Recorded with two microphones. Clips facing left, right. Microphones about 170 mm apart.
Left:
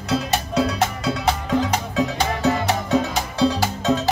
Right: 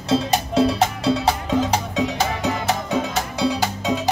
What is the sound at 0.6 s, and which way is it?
Music, 30° right (ahead or behind).